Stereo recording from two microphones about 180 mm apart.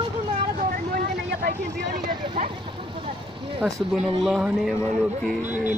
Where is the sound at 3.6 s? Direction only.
5° right (ahead or behind).